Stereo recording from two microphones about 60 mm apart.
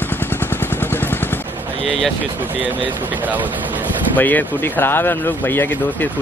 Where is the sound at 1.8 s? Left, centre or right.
Centre.